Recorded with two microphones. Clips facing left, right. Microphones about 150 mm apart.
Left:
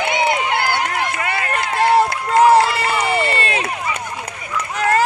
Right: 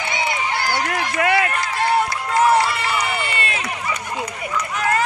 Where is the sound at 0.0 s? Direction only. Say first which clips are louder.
Left 5 dB; 60° left (ahead or behind).